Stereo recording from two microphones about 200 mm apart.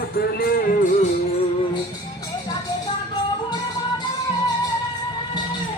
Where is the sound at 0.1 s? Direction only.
50° left (ahead or behind).